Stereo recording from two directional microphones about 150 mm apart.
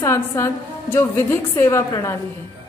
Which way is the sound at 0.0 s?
15° left (ahead or behind).